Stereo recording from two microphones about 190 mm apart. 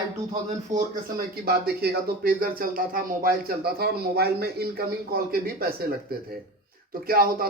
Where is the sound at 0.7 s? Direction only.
40° right (ahead or behind).